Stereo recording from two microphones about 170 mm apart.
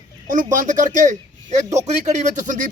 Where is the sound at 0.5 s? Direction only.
50° right (ahead or behind).